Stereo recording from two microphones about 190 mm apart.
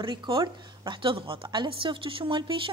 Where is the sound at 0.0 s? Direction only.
25° right (ahead or behind).